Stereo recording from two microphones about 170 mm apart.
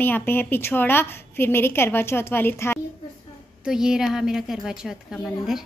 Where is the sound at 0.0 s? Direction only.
10° left (ahead or behind).